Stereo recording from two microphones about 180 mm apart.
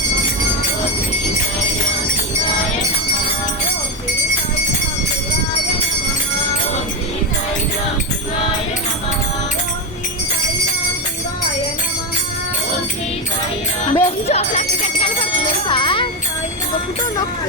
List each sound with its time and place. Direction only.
13.9 s music: 35° left (ahead or behind)
15.0 s jingle bell: 30° left (ahead or behind)